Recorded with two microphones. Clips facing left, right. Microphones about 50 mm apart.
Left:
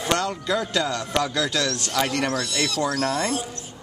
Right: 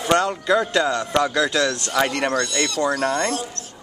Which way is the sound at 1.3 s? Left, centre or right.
Centre.